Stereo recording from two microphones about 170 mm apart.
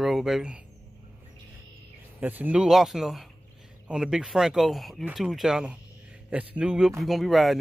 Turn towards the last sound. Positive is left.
turn(degrees=0)  # may be behind; listen again after turning